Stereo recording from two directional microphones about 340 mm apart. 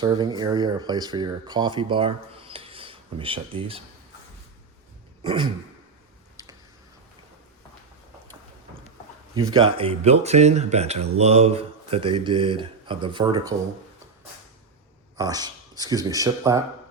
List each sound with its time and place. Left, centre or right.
0.0 s speech: centre
5.2 s throat clearing: centre
9.3 s speech: centre
15.2 s speech: centre